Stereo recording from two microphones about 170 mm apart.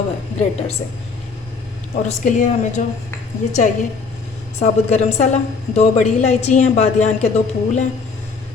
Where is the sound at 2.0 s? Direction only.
45° left (ahead or behind).